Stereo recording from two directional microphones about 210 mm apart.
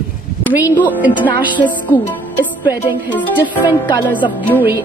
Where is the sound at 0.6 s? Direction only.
10° left (ahead or behind).